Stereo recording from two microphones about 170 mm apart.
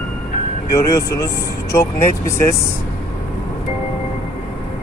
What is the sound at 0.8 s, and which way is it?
Speech, 15° left (ahead or behind).